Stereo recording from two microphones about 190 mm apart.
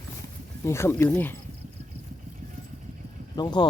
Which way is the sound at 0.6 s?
15° left (ahead or behind).